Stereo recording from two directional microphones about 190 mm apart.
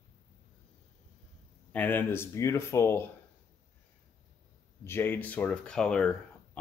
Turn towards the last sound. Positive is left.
turn(degrees=5)  # may be behind; listen again after turning